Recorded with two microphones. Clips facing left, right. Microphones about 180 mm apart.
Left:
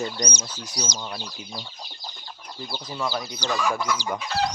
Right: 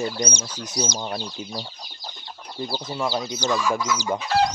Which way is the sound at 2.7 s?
25° right (ahead or behind).